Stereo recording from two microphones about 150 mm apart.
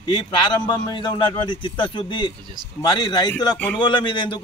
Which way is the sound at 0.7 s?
30° left (ahead or behind).